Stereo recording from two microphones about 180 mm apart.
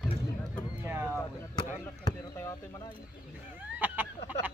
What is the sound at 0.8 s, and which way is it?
Speech, 10° right (ahead or behind).